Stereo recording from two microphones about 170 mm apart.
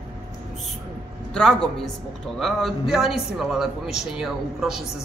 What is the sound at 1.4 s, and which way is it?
A man's voice, 5° left (ahead or behind).